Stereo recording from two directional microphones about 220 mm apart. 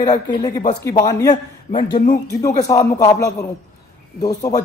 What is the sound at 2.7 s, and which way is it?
Speech, 15° left (ahead or behind).